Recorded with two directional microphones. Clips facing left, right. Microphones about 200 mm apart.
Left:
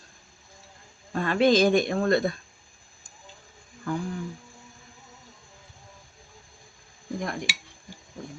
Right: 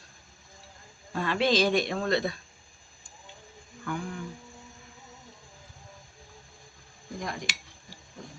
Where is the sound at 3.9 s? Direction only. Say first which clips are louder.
Left 4 dB; 35° left (ahead or behind).